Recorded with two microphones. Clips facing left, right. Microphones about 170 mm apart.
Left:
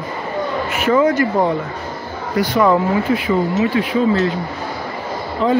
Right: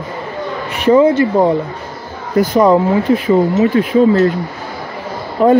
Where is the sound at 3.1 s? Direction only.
40° right (ahead or behind).